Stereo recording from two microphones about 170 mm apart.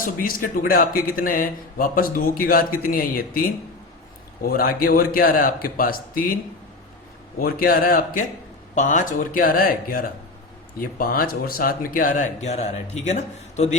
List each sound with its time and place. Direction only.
0.0 s speech: 55° left (ahead or behind)
7.4 s speech: 60° left (ahead or behind); by 13.7 s 40° left (ahead or behind)